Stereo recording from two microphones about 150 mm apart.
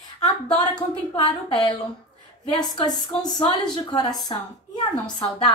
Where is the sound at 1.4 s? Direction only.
30° left (ahead or behind).